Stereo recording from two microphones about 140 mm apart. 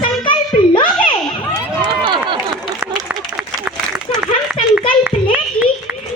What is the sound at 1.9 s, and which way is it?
Run, 35° right (ahead or behind).